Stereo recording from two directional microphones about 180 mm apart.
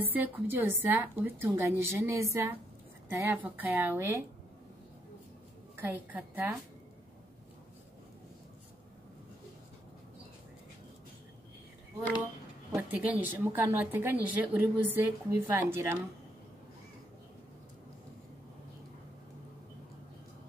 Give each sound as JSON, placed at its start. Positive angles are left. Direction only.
{"t": 0.1, "sound": "a woman's voice", "side_deg": -10}
{"t": 5.8, "sound": "a woman's voice", "side_deg": -10}
{"t": 12.7, "sound": "a woman's voice", "side_deg": -10}